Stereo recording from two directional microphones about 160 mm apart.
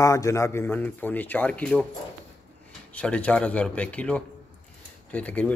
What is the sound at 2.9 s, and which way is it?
Speech, 10° left (ahead or behind).